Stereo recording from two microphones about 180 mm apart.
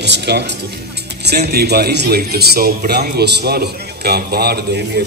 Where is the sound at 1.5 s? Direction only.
60° right (ahead or behind).